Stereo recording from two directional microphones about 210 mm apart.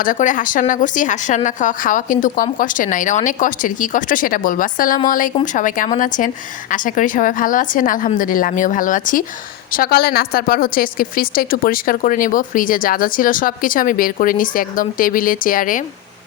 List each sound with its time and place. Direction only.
0.0 s a woman's voice: 40° left (ahead or behind)